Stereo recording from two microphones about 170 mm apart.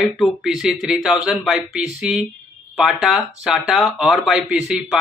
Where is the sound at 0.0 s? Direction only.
Centre (ahead or behind).